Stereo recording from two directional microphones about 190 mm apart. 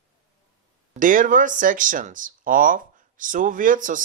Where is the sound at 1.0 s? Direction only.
45° right (ahead or behind).